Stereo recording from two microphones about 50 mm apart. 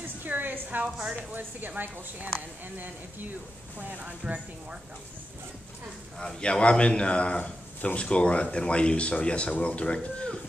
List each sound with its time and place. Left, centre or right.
0.2 s a sound: right
0.8 s a woman's voice: centre
1.8 s speech: right
6.4 s speech: centre